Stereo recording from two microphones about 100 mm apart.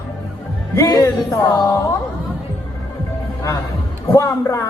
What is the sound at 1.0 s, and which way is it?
Speech, 40° left (ahead or behind).